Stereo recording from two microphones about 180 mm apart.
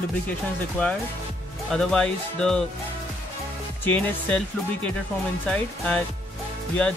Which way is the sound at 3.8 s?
5° left (ahead or behind).